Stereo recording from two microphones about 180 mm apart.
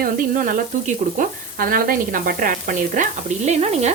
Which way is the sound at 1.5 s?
55° right (ahead or behind).